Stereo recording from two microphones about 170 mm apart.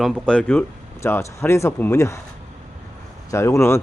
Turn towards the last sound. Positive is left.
turn(degrees=15)  # may be behind; listen again after turning